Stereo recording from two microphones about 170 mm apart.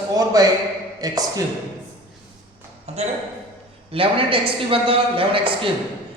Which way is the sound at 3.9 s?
30° right (ahead or behind).